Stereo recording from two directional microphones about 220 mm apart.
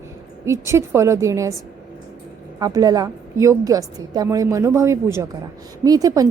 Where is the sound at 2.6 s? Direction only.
15° right (ahead or behind).